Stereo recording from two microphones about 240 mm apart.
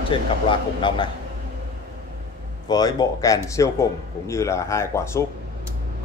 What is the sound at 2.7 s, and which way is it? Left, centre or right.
Speech, centre.